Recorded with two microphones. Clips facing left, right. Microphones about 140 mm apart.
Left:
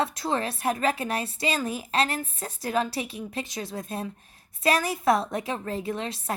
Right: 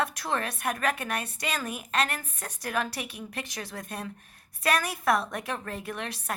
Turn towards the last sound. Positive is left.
turn(degrees=25)  # may be behind; listen again after turning